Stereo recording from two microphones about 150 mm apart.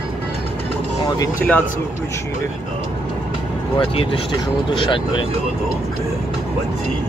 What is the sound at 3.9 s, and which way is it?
Speech, 40° left (ahead or behind).